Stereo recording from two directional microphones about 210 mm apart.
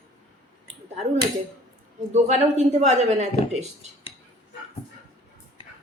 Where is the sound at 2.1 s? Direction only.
35° right (ahead or behind).